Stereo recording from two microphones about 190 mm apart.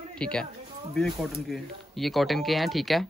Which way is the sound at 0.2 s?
5° left (ahead or behind).